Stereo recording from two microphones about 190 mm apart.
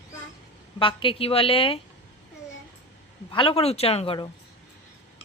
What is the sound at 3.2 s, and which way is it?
A woman's voice, 25° left (ahead or behind).